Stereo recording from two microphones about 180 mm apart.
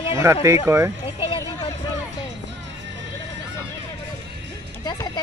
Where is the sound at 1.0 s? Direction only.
25° left (ahead or behind).